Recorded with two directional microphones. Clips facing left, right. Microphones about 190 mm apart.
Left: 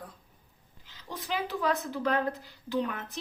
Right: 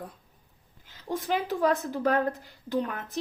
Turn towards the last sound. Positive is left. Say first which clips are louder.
# right 2 dB
turn(degrees=-45)  # may be behind; listen again after turning